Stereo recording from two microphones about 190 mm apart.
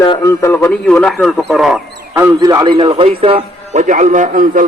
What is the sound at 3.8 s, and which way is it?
Speech, 40° right (ahead or behind).